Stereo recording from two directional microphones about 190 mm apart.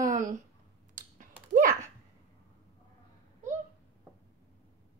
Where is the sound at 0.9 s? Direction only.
45° right (ahead or behind).